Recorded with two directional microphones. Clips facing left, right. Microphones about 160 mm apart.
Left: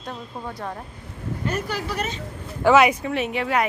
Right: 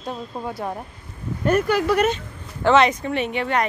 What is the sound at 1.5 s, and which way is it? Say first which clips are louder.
Speech: right 10 dB; 55° right (ahead or behind).